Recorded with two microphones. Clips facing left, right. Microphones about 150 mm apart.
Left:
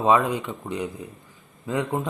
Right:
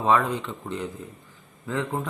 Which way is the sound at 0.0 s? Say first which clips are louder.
Left 2 dB; 15° left (ahead or behind).